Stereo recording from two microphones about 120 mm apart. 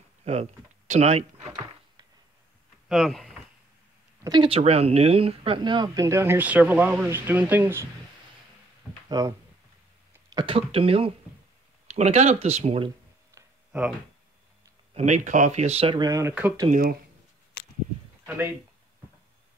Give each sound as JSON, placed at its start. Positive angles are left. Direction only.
{"t": 0.2, "sound": "speech", "side_deg": -65}
{"t": 1.5, "sound": "a sound", "side_deg": -35}
{"t": 2.9, "sound": "speech", "side_deg": 0}
{"t": 4.4, "sound": "speech", "side_deg": -55}
{"t": 5.6, "sound": "speech", "side_deg": -40}
{"t": 6.0, "sound": "speech", "side_deg": -20}
{"t": 9.1, "sound": "speech", "side_deg": -30}
{"t": 10.3, "sound": "speech", "side_deg": -45}
{"t": 11.9, "sound": "speech", "side_deg": -70}
{"t": 13.3, "sound": "a sound", "side_deg": -25}
{"t": 15.0, "sound": "speech", "side_deg": -90}
{"t": 16.0, "sound": "speech", "side_deg": -25}